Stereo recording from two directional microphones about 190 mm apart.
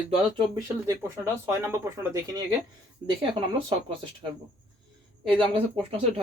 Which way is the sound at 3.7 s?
25° right (ahead or behind).